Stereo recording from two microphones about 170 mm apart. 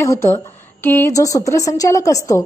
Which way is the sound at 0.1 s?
15° left (ahead or behind).